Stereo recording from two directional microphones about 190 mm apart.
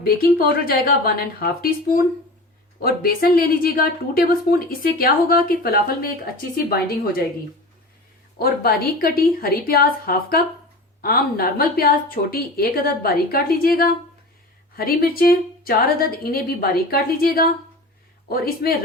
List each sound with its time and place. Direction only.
0.3 s speech: 50° left (ahead or behind)
8.4 s speech: 55° left (ahead or behind)